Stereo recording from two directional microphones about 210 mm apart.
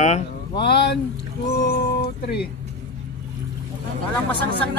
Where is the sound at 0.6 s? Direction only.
50° left (ahead or behind).